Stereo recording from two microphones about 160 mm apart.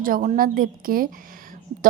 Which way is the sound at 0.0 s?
55° right (ahead or behind).